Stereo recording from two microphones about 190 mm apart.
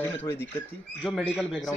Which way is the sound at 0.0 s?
10° left (ahead or behind).